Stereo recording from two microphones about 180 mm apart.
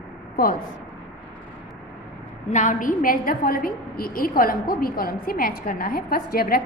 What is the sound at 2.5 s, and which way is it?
A woman's voice, 45° left (ahead or behind).